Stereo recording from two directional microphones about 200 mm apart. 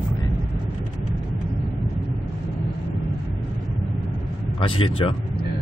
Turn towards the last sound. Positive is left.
turn(degrees=25)  # may be behind; listen again after turning